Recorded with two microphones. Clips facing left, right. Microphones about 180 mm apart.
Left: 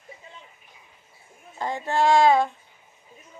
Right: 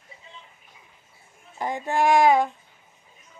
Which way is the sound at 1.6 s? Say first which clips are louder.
Even; 15° right (ahead or behind).